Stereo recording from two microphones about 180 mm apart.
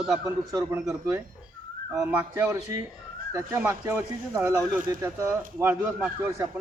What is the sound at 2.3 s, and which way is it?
Speech, 15° right (ahead or behind).